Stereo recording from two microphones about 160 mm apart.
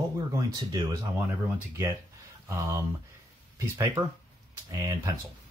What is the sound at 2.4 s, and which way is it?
Speech, 15° right (ahead or behind).